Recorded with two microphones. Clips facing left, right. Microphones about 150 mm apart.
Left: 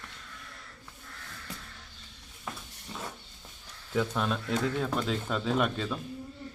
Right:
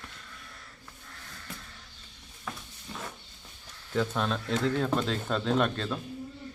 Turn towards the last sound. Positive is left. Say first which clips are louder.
# right 1 dB
turn(degrees=5)  # may be behind; listen again after turning